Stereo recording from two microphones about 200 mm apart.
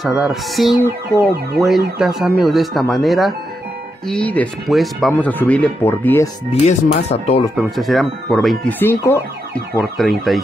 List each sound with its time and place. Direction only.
0.0 s speech: centre (ahead or behind)
6.6 s speech: 35° left (ahead or behind)
7.5 s speech: centre (ahead or behind)
9.8 s speech: centre (ahead or behind)